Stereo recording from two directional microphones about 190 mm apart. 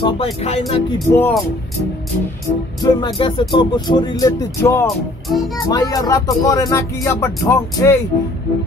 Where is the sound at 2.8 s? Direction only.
25° left (ahead or behind).